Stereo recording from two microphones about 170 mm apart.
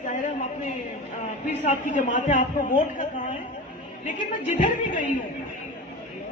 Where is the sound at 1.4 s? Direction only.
45° left (ahead or behind).